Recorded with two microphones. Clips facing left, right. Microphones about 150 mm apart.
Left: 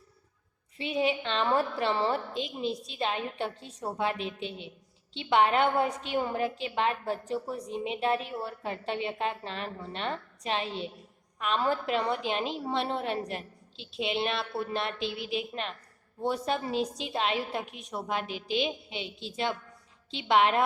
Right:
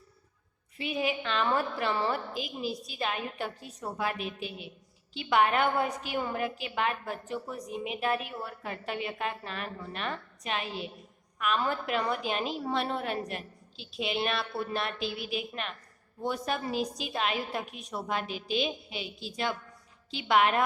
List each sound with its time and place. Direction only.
0.8 s a woman's voice: 30° left (ahead or behind)